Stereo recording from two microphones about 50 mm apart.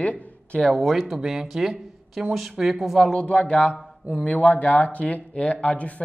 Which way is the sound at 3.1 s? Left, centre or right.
Left.